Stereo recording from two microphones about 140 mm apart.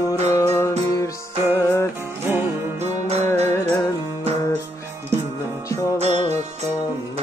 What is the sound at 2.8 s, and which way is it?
Music, 50° right (ahead or behind).